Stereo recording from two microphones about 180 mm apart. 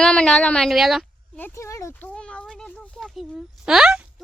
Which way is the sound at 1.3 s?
15° left (ahead or behind).